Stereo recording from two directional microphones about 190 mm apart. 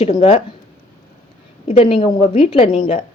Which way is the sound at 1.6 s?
30° left (ahead or behind).